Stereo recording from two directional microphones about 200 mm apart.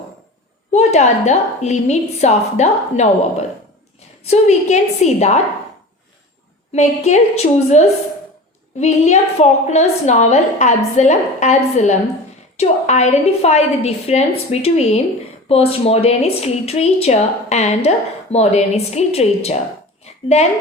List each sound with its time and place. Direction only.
0.7 s speech: 35° left (ahead or behind)
4.2 s speech: 35° left (ahead or behind)
6.7 s speech: 35° left (ahead or behind)